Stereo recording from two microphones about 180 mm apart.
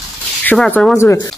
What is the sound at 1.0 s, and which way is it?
Speech, 20° left (ahead or behind).